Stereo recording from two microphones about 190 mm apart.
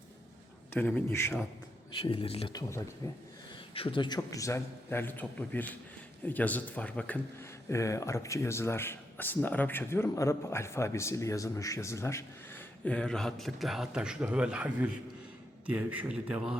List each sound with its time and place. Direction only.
0.7 s speech: 10° left (ahead or behind)
2.0 s speech: 30° left (ahead or behind)
3.8 s a man's voice: 25° left (ahead or behind); by 16.6 s 5° right (ahead or behind)